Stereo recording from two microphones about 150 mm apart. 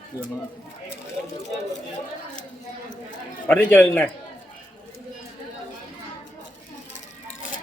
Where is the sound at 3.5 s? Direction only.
10° left (ahead or behind).